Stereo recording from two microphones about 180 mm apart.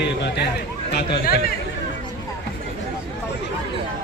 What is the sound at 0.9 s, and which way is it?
Speech, 60° left (ahead or behind).